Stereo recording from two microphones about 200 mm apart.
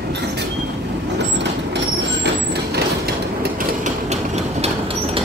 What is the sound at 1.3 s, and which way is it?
Train, 60° right (ahead or behind).